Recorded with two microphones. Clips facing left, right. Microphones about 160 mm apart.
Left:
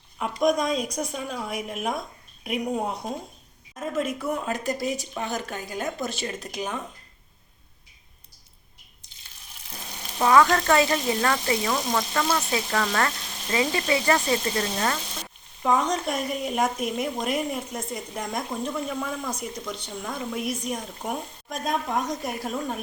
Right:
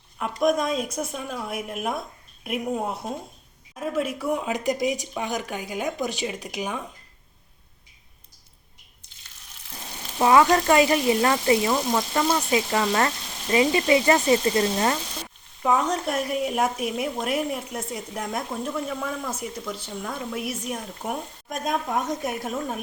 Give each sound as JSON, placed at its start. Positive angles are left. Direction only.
{"t": 0.2, "sound": "speech", "side_deg": 0}
{"t": 10.2, "sound": "speech", "side_deg": -20}
{"t": 15.6, "sound": "speech", "side_deg": -5}